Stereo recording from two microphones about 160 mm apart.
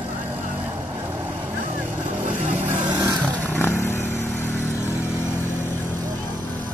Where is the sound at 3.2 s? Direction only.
10° left (ahead or behind).